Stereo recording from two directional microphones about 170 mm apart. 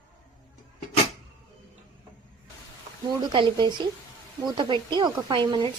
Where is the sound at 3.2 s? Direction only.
25° right (ahead or behind).